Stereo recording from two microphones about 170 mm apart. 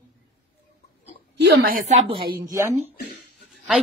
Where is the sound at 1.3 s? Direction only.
75° right (ahead or behind).